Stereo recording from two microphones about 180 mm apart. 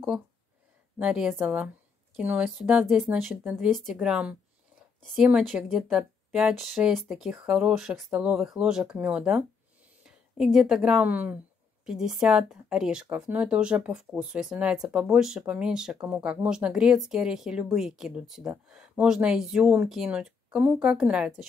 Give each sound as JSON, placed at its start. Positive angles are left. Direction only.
{"t": 0.9, "sound": "a woman's voice", "side_deg": -5}